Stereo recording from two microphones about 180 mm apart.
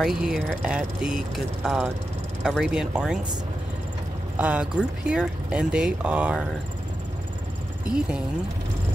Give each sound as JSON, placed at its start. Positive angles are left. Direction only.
{"t": 0.0, "sound": "speech", "side_deg": 0}
{"t": 4.4, "sound": "speech", "side_deg": -5}
{"t": 7.8, "sound": "speech", "side_deg": -5}